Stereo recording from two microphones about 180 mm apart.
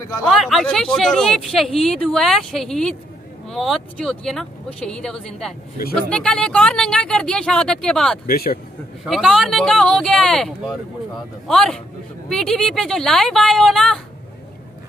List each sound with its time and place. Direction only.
0.3 s speech: centre (ahead or behind)
8.3 s a man's voice: 60° left (ahead or behind)
9.0 s speech: centre (ahead or behind)